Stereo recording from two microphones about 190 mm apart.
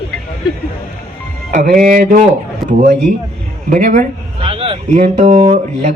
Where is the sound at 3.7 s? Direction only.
45° right (ahead or behind).